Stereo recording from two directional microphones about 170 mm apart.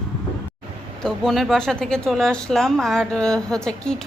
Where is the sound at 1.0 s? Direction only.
Centre (ahead or behind).